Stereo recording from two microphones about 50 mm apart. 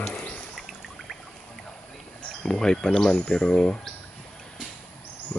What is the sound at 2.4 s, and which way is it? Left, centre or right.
Speech, centre.